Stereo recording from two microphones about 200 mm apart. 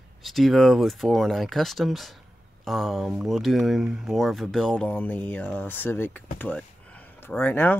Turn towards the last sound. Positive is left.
turn(degrees=10)  # may be behind; listen again after turning